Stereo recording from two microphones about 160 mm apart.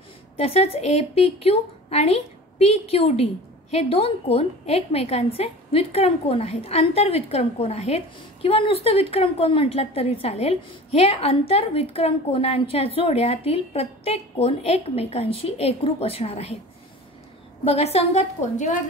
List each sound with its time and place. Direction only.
0.4 s a woman's voice: 40° left (ahead or behind)
17.6 s a woman's voice: 40° left (ahead or behind)